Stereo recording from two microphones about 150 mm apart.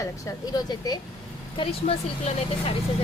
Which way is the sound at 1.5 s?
40° left (ahead or behind).